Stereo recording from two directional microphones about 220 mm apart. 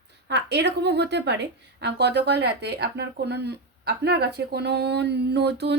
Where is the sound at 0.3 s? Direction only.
50° right (ahead or behind).